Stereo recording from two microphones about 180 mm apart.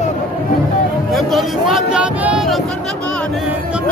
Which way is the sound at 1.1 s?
Centre (ahead or behind).